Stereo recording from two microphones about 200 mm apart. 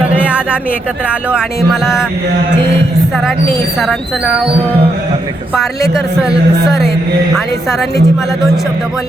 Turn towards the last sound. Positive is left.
turn(degrees=0)  # may be behind; listen again after turning